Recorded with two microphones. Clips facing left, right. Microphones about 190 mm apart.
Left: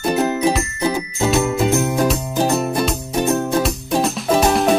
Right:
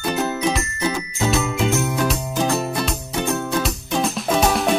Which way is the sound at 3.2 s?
35° left (ahead or behind).